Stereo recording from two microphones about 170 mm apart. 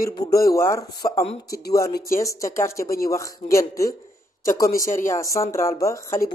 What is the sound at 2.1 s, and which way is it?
Speech, 20° left (ahead or behind).